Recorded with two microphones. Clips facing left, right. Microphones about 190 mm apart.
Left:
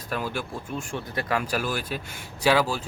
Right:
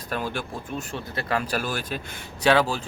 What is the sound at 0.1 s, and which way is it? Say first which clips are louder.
Speech: even; 5° left (ahead or behind).